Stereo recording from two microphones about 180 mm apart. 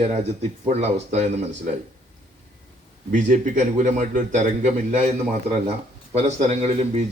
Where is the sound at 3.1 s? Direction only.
45° right (ahead or behind).